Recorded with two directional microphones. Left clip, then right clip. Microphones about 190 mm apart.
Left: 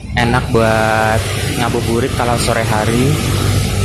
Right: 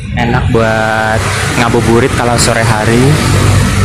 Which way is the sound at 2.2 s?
10° right (ahead or behind).